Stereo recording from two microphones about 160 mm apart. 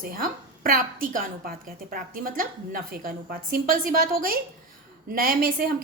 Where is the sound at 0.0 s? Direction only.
65° right (ahead or behind).